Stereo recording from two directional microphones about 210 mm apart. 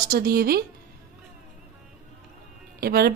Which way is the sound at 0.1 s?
45° right (ahead or behind).